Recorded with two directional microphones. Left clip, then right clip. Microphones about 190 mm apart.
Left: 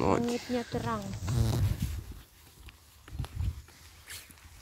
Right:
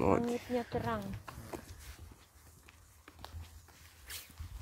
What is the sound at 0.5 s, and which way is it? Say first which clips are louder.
Speech: left 2 dB; 75° left (ahead or behind).